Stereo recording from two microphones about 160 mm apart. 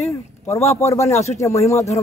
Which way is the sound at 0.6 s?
40° left (ahead or behind).